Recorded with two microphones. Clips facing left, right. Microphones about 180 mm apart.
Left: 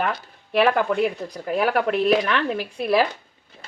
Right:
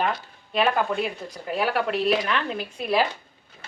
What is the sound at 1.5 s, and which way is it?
Speech, 50° left (ahead or behind).